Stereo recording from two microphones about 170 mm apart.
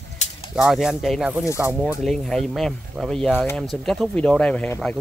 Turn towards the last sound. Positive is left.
turn(degrees=5)  # may be behind; listen again after turning